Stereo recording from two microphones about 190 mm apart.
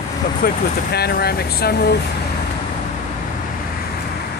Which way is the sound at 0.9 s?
55° left (ahead or behind).